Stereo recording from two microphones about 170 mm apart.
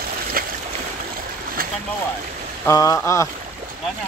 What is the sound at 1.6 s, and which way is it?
Boat, 60° right (ahead or behind).